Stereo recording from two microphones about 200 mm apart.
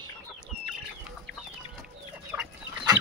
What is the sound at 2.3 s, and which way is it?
Chicken, 15° right (ahead or behind).